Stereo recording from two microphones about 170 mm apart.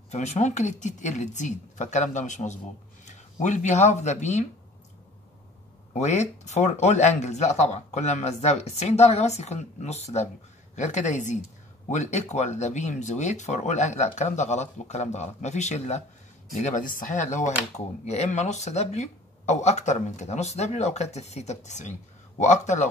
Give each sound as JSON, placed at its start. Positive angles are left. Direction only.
{"t": 0.1, "sound": "speech", "side_deg": 40}
{"t": 5.9, "sound": "speech", "side_deg": 40}